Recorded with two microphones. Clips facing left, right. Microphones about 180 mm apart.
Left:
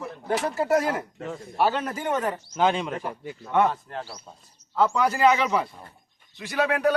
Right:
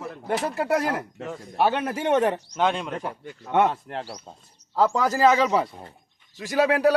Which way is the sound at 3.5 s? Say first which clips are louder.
Right 1 dB; 20° right (ahead or behind).